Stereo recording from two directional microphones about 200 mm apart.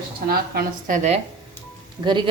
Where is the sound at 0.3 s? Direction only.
50° right (ahead or behind).